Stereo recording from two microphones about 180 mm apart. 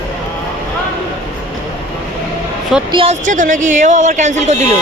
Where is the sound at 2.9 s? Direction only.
30° right (ahead or behind).